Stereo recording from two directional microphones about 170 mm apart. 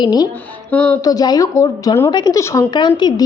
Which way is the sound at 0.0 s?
25° left (ahead or behind).